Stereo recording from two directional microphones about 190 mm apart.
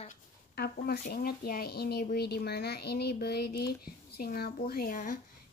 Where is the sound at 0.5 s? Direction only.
55° left (ahead or behind).